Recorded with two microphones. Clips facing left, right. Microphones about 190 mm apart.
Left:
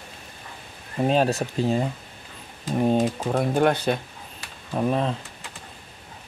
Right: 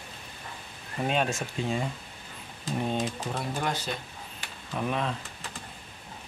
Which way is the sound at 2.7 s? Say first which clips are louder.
Left 9 dB; 45° left (ahead or behind).